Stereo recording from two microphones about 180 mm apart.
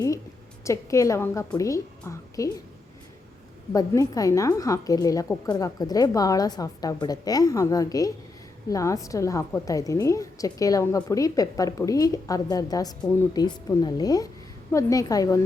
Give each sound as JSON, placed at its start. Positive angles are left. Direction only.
{"t": 0.6, "sound": "a woman's voice", "side_deg": 15}
{"t": 3.7, "sound": "a woman's voice", "side_deg": 20}